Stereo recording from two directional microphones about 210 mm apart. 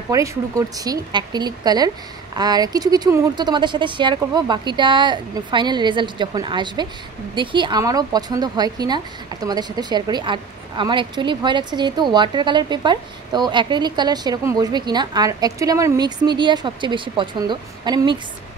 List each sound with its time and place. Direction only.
0.1 s speech: 15° right (ahead or behind)